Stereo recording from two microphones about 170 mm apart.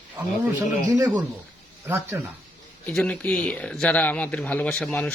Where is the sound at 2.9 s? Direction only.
5° left (ahead or behind).